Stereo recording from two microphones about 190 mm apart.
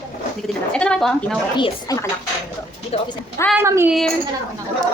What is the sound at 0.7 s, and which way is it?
Speech, 5° left (ahead or behind).